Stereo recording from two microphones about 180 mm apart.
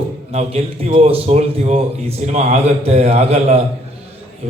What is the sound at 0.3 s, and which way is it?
A man's voice, 35° right (ahead or behind).